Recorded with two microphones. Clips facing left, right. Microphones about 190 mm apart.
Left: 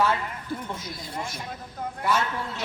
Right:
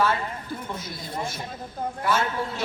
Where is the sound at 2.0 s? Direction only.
25° right (ahead or behind).